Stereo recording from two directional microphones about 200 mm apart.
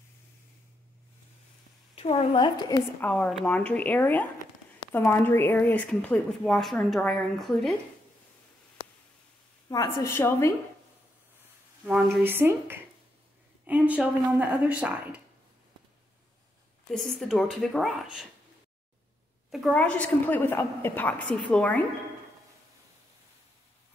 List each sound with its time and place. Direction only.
2.0 s a woman's voice: 30° left (ahead or behind)
3.0 s a woman's voice: 5° left (ahead or behind)
9.7 s a woman's voice: 15° left (ahead or behind)
11.8 s speech: 5° right (ahead or behind)
17.2 s speech: centre (ahead or behind)
19.5 s a woman's voice: 5° left (ahead or behind)